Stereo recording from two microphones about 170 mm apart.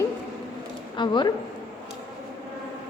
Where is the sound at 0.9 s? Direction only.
25° left (ahead or behind).